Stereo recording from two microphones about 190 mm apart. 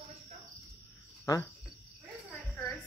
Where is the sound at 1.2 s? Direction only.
15° left (ahead or behind).